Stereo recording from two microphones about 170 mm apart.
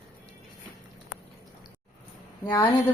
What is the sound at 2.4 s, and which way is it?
Speech, 25° left (ahead or behind).